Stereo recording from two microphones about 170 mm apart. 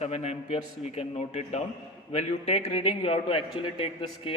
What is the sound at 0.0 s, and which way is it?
A man's voice, 40° left (ahead or behind).